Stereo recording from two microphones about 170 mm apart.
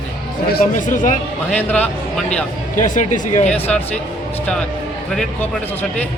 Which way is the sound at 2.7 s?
50° left (ahead or behind).